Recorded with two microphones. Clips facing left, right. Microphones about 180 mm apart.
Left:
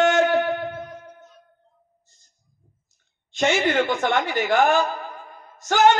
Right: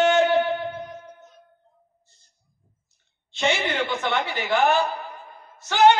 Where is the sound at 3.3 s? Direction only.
45° left (ahead or behind).